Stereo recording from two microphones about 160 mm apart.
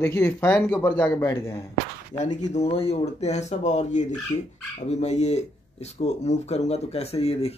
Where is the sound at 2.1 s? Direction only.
50° left (ahead or behind).